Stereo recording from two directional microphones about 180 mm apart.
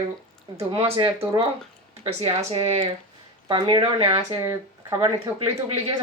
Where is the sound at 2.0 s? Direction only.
35° right (ahead or behind).